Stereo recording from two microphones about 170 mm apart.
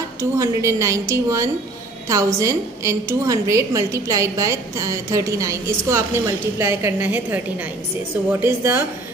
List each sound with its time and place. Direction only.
0.2 s a woman's voice: 15° right (ahead or behind)